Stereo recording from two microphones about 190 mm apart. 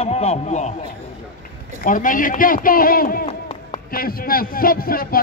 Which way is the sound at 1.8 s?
45° left (ahead or behind).